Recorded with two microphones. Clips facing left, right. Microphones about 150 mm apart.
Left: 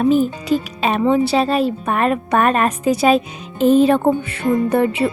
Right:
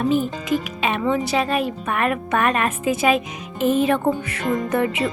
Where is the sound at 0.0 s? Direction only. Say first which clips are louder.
Left 5 dB; 40° left (ahead or behind).